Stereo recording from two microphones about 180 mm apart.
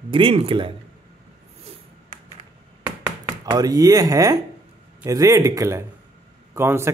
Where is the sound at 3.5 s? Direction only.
20° right (ahead or behind).